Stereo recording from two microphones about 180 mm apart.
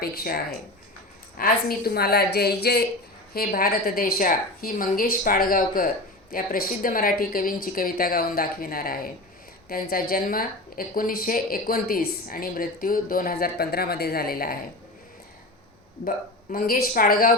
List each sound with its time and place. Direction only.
0.0 s a woman's voice: 55° left (ahead or behind)
16.0 s speech: 50° left (ahead or behind)